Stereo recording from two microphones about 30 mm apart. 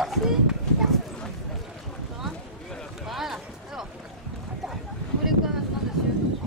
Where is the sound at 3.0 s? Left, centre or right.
Centre.